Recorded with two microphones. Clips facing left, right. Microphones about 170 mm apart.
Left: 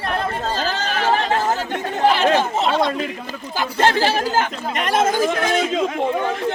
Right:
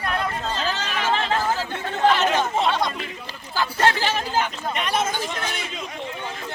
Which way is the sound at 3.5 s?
20° left (ahead or behind).